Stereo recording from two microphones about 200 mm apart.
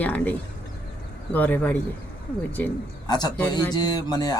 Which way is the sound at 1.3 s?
10° left (ahead or behind).